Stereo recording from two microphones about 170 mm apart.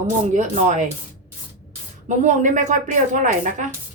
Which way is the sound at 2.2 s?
45° right (ahead or behind).